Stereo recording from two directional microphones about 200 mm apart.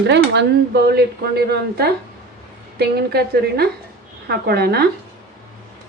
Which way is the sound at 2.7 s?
55° right (ahead or behind).